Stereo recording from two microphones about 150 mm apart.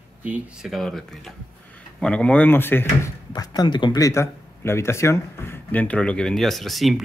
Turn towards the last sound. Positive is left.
turn(degrees=0)  # may be behind; listen again after turning